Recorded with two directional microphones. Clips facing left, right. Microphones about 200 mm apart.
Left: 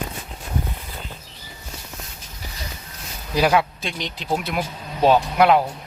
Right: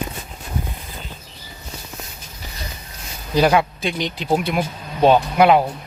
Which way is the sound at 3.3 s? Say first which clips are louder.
Right 3 dB; centre (ahead or behind).